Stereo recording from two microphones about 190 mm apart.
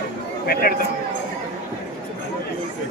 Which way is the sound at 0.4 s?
50° left (ahead or behind).